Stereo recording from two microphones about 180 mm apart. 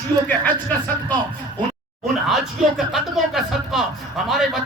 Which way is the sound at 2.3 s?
Centre (ahead or behind).